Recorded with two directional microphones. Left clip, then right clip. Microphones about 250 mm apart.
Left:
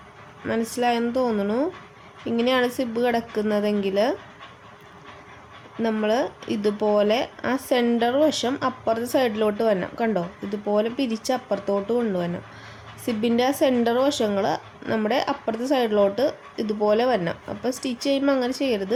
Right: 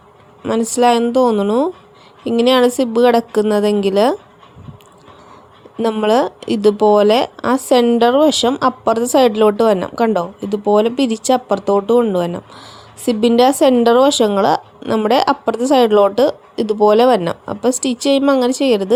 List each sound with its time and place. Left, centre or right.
0.7 s a woman's voice: right
5.8 s a woman's voice: right